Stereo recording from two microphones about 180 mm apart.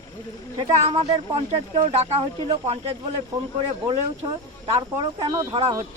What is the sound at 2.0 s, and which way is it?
Speech, 35° right (ahead or behind).